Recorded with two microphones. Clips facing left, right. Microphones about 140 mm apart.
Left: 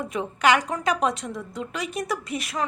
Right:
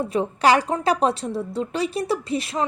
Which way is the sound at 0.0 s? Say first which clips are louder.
Right 3 dB; 35° right (ahead or behind).